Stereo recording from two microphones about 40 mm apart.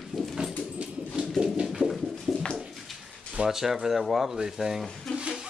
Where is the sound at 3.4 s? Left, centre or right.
Centre.